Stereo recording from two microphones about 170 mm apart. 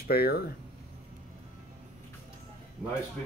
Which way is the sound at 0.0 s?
65° left (ahead or behind).